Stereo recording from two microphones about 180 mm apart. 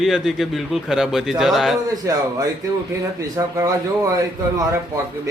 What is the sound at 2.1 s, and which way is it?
Speech, 20° right (ahead or behind).